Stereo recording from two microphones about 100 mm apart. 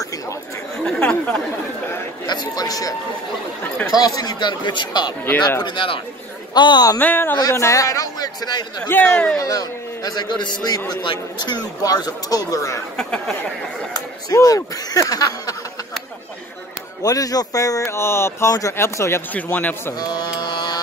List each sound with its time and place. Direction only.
0.8 s speech: 10° left (ahead or behind)
2.2 s speech: 45° left (ahead or behind)
7.0 s speech: 20° left (ahead or behind)
7.3 s speech: 35° left (ahead or behind)
8.8 s speech: 20° left (ahead or behind)
9.1 s a man's voice: 10° left (ahead or behind)
9.4 s speech: 40° left (ahead or behind)
14.3 s speech: 35° left (ahead or behind)
17.0 s speech: 40° left (ahead or behind)
19.3 s a man's voice: 15° left (ahead or behind)
20.0 s mantra: 45° left (ahead or behind)